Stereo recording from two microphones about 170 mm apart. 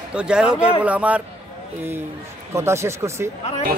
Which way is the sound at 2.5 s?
15° right (ahead or behind).